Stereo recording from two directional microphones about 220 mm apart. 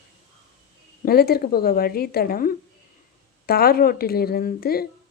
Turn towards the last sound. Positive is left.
turn(degrees=45)  # may be behind; listen again after turning